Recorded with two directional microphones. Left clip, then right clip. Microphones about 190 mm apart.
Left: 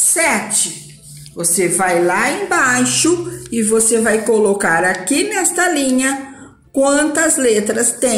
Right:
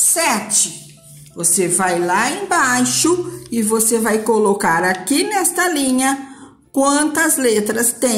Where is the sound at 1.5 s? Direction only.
60° right (ahead or behind).